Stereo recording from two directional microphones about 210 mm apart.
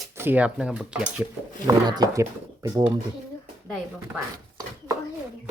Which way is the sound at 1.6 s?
15° right (ahead or behind).